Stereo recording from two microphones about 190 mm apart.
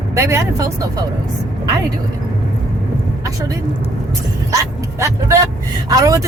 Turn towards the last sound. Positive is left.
turn(degrees=-20)  # may be behind; listen again after turning